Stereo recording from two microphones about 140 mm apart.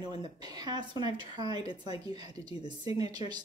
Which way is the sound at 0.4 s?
30° right (ahead or behind).